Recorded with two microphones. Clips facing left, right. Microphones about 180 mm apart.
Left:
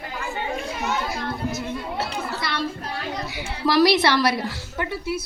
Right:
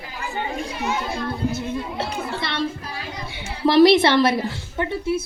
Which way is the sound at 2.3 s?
25° right (ahead or behind).